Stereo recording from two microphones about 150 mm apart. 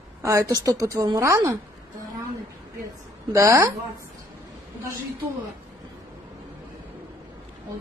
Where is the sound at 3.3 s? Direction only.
20° right (ahead or behind).